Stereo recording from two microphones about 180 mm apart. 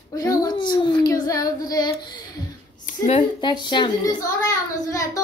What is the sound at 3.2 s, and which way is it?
A child's voice, 25° left (ahead or behind).